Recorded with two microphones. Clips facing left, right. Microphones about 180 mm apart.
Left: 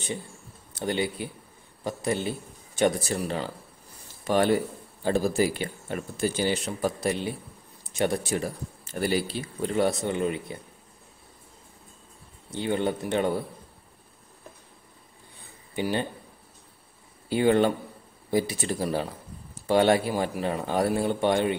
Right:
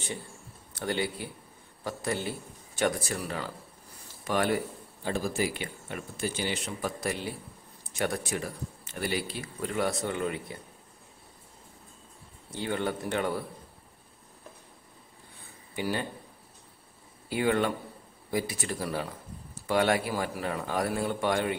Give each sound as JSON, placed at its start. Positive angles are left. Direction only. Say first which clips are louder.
{"t": 0.7, "sound": "a man's voice", "louder": "left 3 dB", "side_deg": 20}
{"t": 7.0, "sound": "a man's voice", "louder": "left 5 dB", "side_deg": 20}
{"t": 12.5, "sound": "a man's voice", "louder": "left 4 dB", "side_deg": 20}
{"t": 15.7, "sound": "speech", "louder": "left 4 dB", "side_deg": 25}
{"t": 17.3, "sound": "a man's voice", "louder": "left 5 dB", "side_deg": 30}